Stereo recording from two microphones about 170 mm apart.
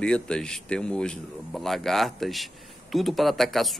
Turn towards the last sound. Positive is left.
turn(degrees=0)  # may be behind; listen again after turning